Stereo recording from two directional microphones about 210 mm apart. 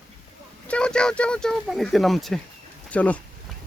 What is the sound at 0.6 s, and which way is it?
Speech, 5° left (ahead or behind).